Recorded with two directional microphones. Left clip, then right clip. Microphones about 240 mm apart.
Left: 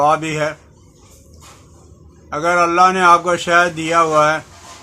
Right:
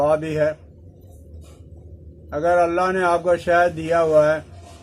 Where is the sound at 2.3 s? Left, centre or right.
Centre.